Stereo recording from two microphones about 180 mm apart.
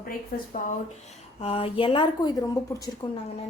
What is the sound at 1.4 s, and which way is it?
A woman's voice, 30° left (ahead or behind).